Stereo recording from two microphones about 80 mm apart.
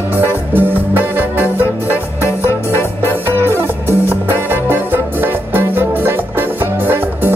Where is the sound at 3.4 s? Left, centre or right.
Right.